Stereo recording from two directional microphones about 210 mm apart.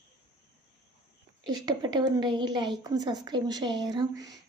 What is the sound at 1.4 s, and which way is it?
A woman's voice, 20° right (ahead or behind).